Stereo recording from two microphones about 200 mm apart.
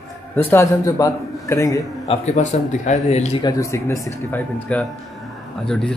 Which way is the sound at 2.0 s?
30° left (ahead or behind).